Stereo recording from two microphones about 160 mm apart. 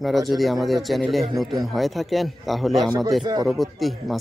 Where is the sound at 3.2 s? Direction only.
25° right (ahead or behind).